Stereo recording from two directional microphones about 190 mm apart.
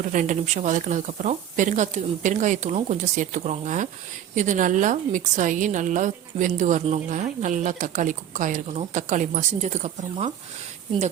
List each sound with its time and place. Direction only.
0.1 s a woman's voice: 40° right (ahead or behind)